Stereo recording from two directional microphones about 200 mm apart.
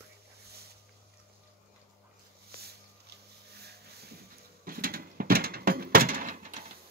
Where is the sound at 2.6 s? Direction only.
55° right (ahead or behind).